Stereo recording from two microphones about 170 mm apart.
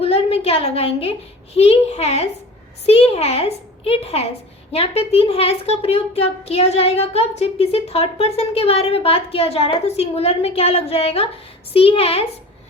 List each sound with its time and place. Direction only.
0.0 s a woman's voice: 35° left (ahead or behind)